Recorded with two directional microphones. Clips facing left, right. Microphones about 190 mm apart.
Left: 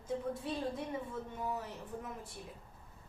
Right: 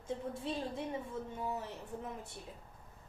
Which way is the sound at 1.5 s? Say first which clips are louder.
Even; 25° right (ahead or behind).